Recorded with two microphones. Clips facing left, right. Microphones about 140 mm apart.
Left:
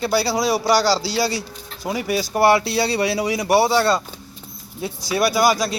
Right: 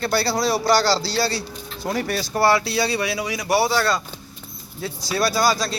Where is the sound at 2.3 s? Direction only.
20° left (ahead or behind).